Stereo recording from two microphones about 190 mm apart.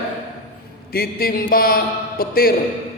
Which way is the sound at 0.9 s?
50° left (ahead or behind).